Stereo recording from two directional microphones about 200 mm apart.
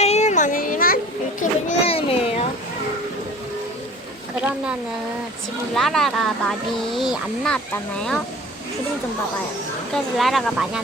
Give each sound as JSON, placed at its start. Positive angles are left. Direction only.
{"t": 0.0, "sound": "a sound", "side_deg": 35}
{"t": 1.4, "sound": "children playing", "side_deg": 35}
{"t": 5.7, "sound": "speech", "side_deg": 0}
{"t": 9.9, "sound": "speech", "side_deg": 0}